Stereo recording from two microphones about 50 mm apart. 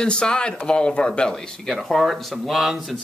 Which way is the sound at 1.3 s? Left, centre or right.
Centre.